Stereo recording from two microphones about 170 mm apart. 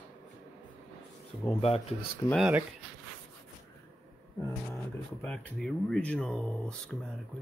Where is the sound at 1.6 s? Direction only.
35° left (ahead or behind).